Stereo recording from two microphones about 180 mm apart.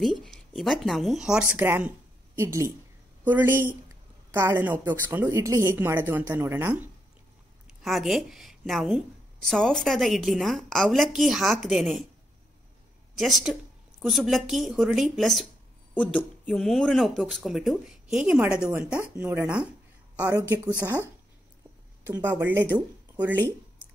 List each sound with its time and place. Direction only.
0.0 s a woman's voice: 5° left (ahead or behind)
7.6 s speech: centre (ahead or behind)
13.2 s a woman's voice: centre (ahead or behind)
22.0 s speech: 10° right (ahead or behind)